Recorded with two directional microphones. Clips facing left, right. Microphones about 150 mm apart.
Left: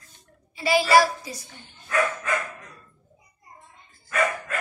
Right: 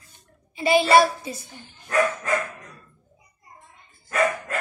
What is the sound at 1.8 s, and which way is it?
Speech, 40° right (ahead or behind).